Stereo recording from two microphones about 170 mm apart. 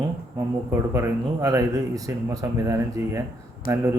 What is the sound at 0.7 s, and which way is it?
Speech, 15° right (ahead or behind).